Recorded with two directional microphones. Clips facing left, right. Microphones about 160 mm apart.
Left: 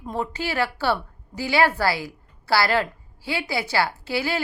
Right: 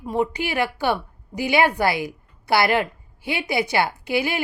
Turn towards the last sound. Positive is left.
turn(degrees=-15)  # may be behind; listen again after turning